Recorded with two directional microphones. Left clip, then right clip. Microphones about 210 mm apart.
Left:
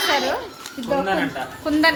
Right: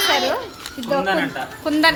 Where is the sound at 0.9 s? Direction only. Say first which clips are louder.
Right 2 dB; 5° left (ahead or behind).